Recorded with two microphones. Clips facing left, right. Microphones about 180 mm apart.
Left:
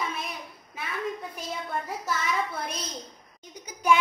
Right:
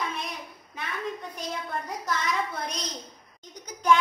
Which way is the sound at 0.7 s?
5° left (ahead or behind).